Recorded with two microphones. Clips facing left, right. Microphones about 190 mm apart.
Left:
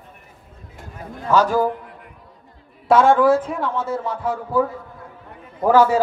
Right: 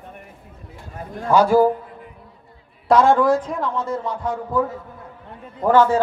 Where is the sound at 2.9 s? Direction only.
Centre (ahead or behind).